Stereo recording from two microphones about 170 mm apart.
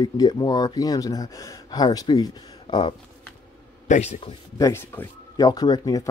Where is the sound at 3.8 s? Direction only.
40° left (ahead or behind).